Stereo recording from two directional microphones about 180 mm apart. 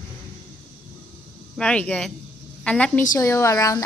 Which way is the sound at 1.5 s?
5° left (ahead or behind).